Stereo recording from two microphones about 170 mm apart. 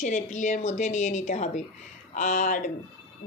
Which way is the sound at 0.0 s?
45° left (ahead or behind).